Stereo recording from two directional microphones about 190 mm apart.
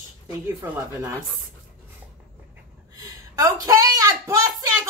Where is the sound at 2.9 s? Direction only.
20° right (ahead or behind).